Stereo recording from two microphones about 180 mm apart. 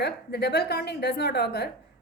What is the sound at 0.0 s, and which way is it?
A woman's voice, 65° left (ahead or behind).